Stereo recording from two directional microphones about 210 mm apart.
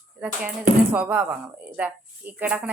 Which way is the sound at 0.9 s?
5° right (ahead or behind).